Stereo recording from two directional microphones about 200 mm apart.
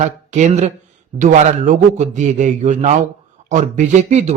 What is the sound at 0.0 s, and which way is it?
Speech, 35° right (ahead or behind).